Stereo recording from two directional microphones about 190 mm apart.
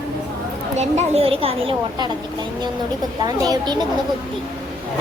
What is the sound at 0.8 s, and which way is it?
Speech, 35° right (ahead or behind).